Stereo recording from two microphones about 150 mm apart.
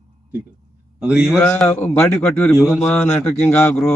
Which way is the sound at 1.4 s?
10° left (ahead or behind).